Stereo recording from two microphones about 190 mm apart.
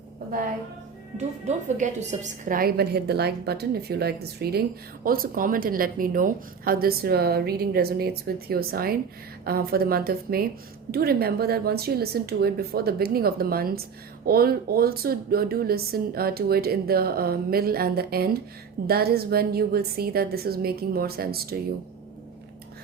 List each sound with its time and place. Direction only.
1.5 s a woman's voice: 40° right (ahead or behind)